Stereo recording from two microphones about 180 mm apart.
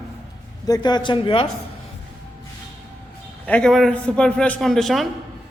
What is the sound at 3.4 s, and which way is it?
A man's voice, 5° left (ahead or behind).